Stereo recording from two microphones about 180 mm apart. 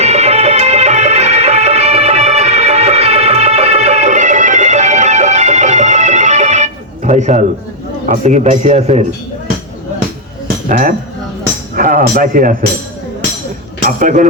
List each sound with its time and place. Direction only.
0.0 s music: 35° right (ahead or behind)
8.0 s a man's voice: 40° right (ahead or behind)
10.7 s speech: 50° right (ahead or behind)
13.8 s speech: 45° right (ahead or behind)